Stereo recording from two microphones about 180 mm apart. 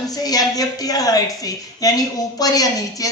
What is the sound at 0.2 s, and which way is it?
A woman's voice, 20° left (ahead or behind).